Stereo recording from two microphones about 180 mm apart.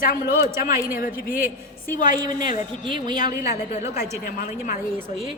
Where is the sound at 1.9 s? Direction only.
50° left (ahead or behind).